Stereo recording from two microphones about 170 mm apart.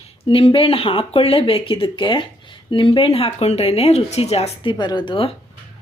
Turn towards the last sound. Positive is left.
turn(degrees=30)  # may be behind; listen again after turning